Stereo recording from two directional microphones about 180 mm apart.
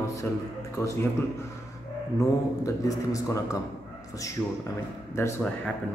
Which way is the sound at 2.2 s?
20° left (ahead or behind).